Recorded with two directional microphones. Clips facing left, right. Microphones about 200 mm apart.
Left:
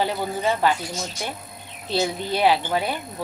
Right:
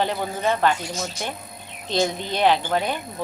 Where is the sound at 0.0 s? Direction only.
10° left (ahead or behind).